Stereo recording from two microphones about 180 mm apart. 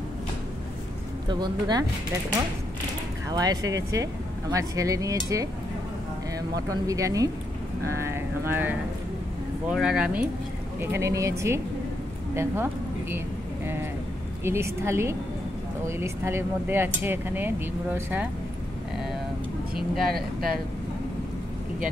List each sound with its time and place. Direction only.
1.3 s speech: 25° right (ahead or behind)
3.3 s speech: 20° right (ahead or behind)
6.5 s speech: 20° right (ahead or behind); by 10.2 s 5° right (ahead or behind)
10.8 s speech: 15° right (ahead or behind)
14.4 s speech: 15° right (ahead or behind)
19.7 s speech: 55° right (ahead or behind)